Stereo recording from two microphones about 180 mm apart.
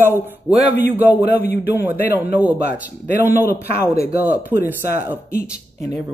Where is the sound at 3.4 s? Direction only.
60° left (ahead or behind).